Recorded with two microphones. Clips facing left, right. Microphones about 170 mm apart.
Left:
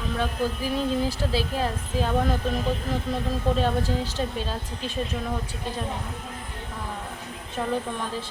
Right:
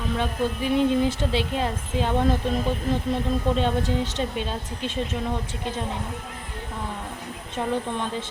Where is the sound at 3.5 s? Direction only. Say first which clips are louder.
Right 1 dB; 20° right (ahead or behind).